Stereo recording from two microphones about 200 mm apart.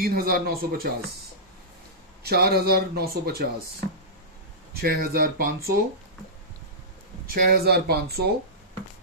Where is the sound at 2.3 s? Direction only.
50° right (ahead or behind).